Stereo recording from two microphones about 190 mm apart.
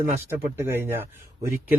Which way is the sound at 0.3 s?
15° right (ahead or behind).